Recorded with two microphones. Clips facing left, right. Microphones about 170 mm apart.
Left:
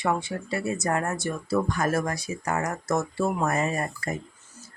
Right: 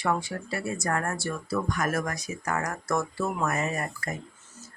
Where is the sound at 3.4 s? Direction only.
30° left (ahead or behind).